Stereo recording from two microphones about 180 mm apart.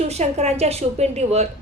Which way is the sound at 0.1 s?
35° right (ahead or behind).